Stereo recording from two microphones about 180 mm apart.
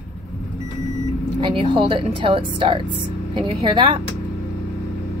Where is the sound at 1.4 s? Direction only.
30° right (ahead or behind).